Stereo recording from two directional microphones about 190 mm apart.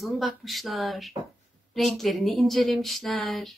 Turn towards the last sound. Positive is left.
turn(degrees=0)  # may be behind; listen again after turning